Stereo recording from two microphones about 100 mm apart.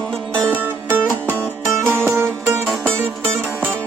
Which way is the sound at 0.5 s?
15° right (ahead or behind).